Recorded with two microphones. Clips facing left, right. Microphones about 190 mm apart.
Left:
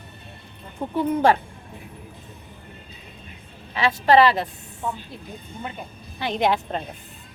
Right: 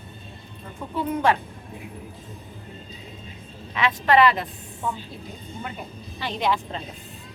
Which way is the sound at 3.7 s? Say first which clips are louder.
Left 3 dB; 35° left (ahead or behind).